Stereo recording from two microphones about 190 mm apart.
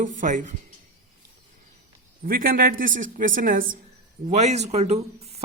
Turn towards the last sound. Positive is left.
turn(degrees=-35)  # may be behind; listen again after turning